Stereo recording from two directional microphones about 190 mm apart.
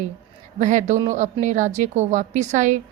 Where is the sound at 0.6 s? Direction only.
40° right (ahead or behind).